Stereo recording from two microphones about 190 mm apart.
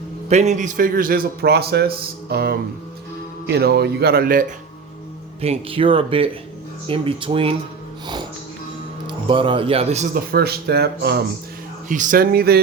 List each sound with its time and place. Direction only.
0.3 s a man's voice: 35° right (ahead or behind)
5.4 s speech: 30° right (ahead or behind)
9.0 s speech: 25° right (ahead or behind)
10.3 s speech: 55° right (ahead or behind)
11.9 s a man's voice: 45° right (ahead or behind)